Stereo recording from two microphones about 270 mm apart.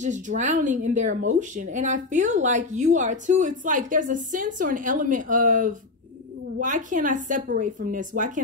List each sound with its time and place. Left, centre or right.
0.0 s speech: right